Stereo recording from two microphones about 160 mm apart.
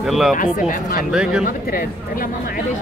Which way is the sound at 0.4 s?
60° left (ahead or behind).